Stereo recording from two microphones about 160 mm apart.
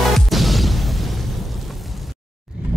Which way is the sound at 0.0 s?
Centre (ahead or behind).